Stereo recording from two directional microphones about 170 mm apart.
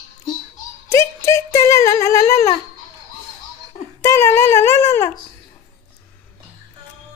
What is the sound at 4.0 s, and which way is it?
Speech, 15° left (ahead or behind).